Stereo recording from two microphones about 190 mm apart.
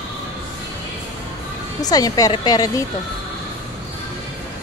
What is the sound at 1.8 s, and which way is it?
A woman's voice, 20° left (ahead or behind).